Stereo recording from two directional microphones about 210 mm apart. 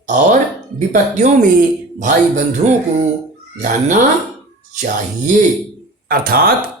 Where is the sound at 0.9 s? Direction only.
35° right (ahead or behind).